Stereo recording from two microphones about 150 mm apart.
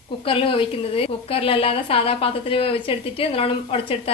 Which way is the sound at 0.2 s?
35° left (ahead or behind).